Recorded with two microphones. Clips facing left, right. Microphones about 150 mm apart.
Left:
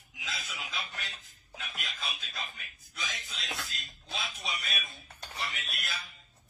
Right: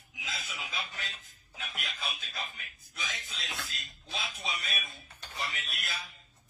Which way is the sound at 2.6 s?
Centre (ahead or behind).